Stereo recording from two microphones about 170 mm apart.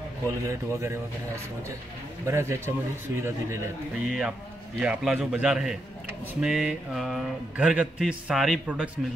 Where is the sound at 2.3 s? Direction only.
15° right (ahead or behind).